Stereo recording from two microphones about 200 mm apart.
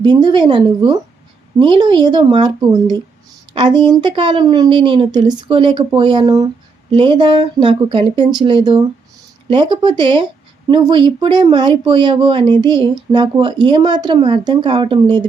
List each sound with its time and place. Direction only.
0.0 s a woman's voice: 20° right (ahead or behind)